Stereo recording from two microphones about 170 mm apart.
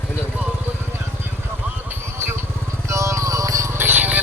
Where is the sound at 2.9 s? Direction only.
15° right (ahead or behind).